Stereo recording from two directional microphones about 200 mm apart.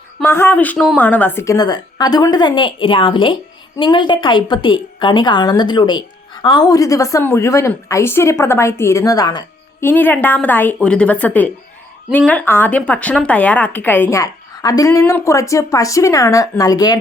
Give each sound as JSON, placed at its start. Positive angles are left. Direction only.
{"t": 0.2, "sound": "a woman's voice", "side_deg": 10}